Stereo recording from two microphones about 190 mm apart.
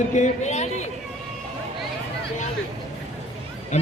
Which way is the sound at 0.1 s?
40° left (ahead or behind).